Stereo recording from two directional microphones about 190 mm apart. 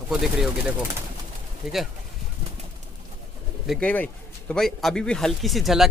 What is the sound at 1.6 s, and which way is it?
Speech, 5° right (ahead or behind).